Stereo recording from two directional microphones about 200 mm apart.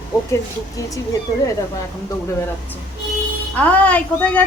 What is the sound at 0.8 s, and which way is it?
Speech, 15° left (ahead or behind).